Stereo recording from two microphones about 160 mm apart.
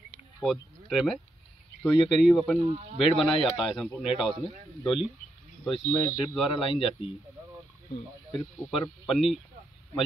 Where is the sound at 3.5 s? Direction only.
Centre (ahead or behind).